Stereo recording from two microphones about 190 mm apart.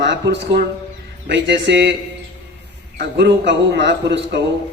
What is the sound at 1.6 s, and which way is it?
Speech, 65° right (ahead or behind).